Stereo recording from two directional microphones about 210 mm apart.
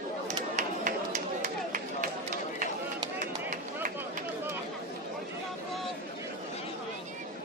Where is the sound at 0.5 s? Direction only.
35° right (ahead or behind).